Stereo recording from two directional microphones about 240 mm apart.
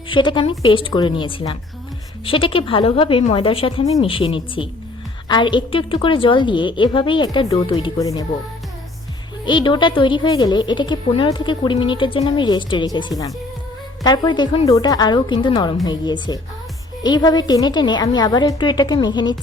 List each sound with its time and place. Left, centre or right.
0.1 s a woman's voice: centre
9.5 s a woman's voice: centre